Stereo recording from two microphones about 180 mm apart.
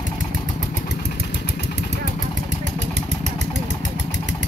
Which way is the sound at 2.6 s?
40° right (ahead or behind).